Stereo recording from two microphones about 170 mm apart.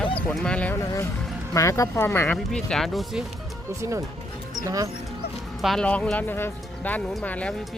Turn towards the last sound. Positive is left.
turn(degrees=5)  # may be behind; listen again after turning